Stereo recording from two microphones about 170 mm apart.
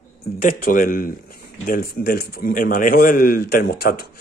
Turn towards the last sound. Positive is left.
turn(degrees=65)  # may be behind; listen again after turning